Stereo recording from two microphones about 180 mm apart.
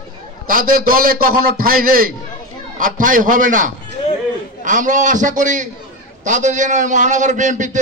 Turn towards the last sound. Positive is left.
turn(degrees=-45)  # may be behind; listen again after turning